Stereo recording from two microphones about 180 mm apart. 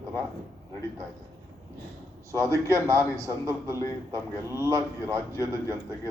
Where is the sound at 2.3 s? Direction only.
15° right (ahead or behind).